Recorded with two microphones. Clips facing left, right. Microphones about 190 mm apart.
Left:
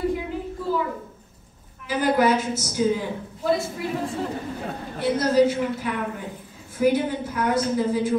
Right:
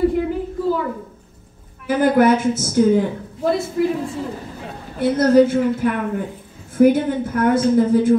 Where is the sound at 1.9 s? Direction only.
55° right (ahead or behind).